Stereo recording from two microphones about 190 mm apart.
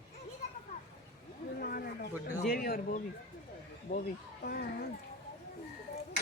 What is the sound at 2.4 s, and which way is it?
A man's voice, 55° left (ahead or behind).